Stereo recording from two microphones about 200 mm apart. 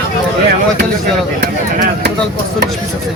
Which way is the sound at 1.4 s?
55° right (ahead or behind).